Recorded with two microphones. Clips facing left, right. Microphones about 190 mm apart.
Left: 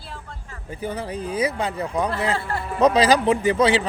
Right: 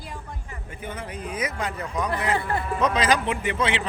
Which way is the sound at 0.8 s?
35° left (ahead or behind).